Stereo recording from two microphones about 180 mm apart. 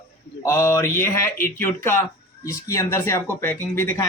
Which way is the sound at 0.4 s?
15° left (ahead or behind).